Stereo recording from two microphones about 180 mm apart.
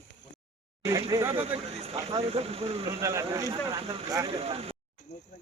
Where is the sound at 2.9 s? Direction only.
15° right (ahead or behind); by 4.8 s 35° right (ahead or behind).